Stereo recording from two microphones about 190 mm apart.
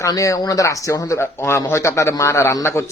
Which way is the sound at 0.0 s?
15° left (ahead or behind).